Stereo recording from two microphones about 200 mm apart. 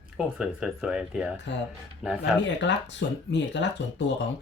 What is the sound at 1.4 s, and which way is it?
Speech, 65° left (ahead or behind).